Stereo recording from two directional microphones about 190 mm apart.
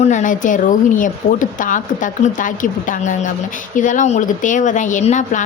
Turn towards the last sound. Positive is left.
turn(degrees=40)  # may be behind; listen again after turning